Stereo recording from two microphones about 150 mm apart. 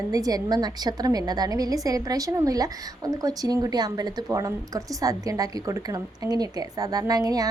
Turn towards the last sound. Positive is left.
turn(degrees=-25)  # may be behind; listen again after turning